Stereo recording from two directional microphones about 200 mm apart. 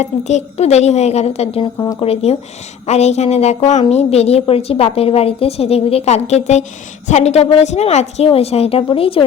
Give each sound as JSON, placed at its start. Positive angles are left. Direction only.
{"t": 0.0, "sound": "a woman's voice", "side_deg": 35}